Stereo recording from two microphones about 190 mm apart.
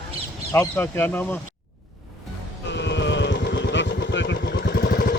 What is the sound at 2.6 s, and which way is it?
Vehicle, 65° left (ahead or behind).